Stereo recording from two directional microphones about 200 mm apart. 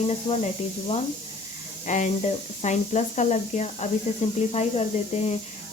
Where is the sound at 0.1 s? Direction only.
30° left (ahead or behind).